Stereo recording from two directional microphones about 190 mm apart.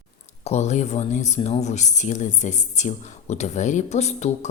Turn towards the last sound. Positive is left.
turn(degrees=35)  # may be behind; listen again after turning